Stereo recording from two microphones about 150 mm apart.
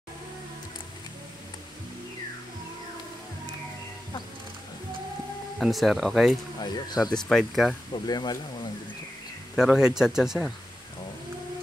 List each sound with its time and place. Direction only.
5.6 s speech: centre (ahead or behind)
6.6 s speech: 25° left (ahead or behind)
7.2 s speech: centre (ahead or behind)
7.9 s speech: 30° left (ahead or behind)
9.6 s speech: 5° right (ahead or behind)